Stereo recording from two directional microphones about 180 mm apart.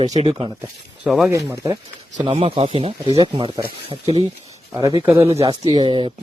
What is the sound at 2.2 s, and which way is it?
Speech, 30° right (ahead or behind).